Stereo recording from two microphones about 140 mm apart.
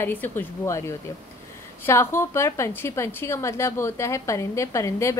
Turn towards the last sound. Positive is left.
turn(degrees=20)  # may be behind; listen again after turning